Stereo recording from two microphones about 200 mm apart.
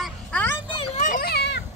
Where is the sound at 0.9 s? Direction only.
40° left (ahead or behind).